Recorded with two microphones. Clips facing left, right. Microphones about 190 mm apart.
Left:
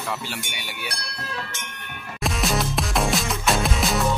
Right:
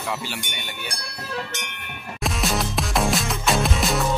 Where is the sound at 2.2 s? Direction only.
Centre (ahead or behind).